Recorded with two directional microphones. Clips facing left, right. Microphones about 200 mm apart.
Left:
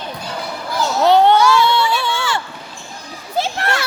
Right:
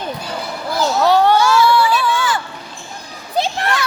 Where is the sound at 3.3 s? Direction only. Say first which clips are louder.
Right 2 dB; 20° right (ahead or behind).